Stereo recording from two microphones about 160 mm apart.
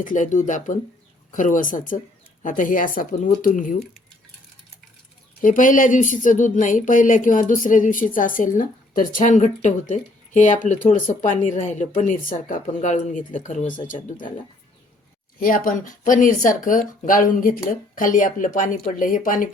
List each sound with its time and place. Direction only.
0.0 s speech: 55° left (ahead or behind)
5.4 s speech: 55° left (ahead or behind)
15.4 s speech: 60° left (ahead or behind)